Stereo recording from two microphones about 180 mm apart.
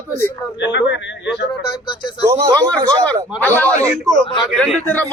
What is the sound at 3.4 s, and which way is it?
A man's voice, 10° left (ahead or behind).